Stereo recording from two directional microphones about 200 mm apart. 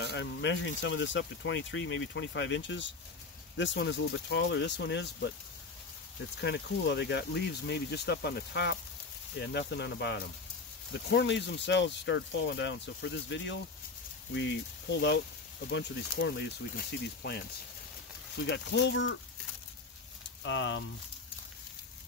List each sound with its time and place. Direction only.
0.0 s speech: 60° left (ahead or behind)
6.4 s speech: 60° left (ahead or behind)
15.7 s speech: 60° left (ahead or behind)
20.4 s speech: 65° left (ahead or behind)